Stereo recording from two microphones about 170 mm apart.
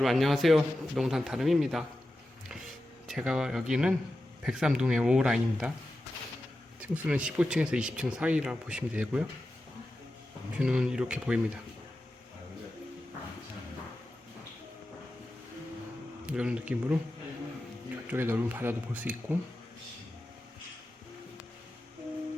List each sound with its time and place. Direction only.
0.0 s speech: centre (ahead or behind)
3.1 s speech: centre (ahead or behind)
6.7 s speech: 10° right (ahead or behind)
10.6 s speech: 5° right (ahead or behind)
16.2 s speech: 10° right (ahead or behind)
18.1 s speech: 10° right (ahead or behind)